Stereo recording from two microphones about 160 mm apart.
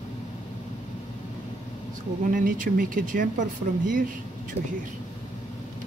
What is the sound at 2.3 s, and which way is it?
Speech, 60° right (ahead or behind).